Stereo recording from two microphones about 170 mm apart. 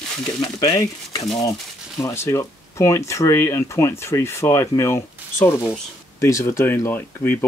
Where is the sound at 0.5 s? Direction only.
20° left (ahead or behind).